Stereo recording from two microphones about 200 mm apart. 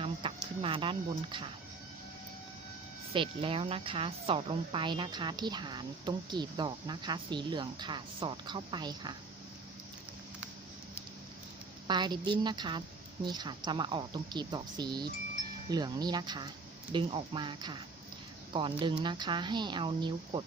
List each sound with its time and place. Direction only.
0.0 s a sound: 25° right (ahead or behind)
3.1 s a woman's voice: 25° right (ahead or behind)
11.9 s a woman's voice: 20° right (ahead or behind)